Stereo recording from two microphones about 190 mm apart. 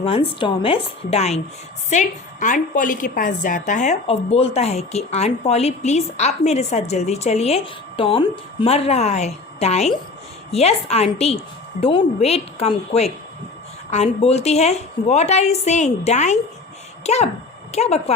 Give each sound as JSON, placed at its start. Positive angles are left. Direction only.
{"t": 0.0, "sound": "a woman's voice", "side_deg": 30}